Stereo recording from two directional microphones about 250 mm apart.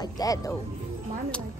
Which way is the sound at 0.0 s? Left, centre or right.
Centre.